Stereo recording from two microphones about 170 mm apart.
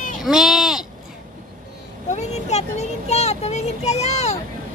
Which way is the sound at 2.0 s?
40° left (ahead or behind).